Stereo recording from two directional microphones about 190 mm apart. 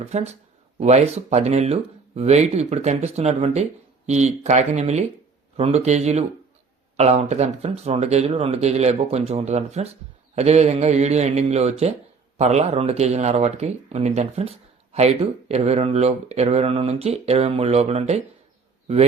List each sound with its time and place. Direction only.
0.0 s speech: 35° right (ahead or behind)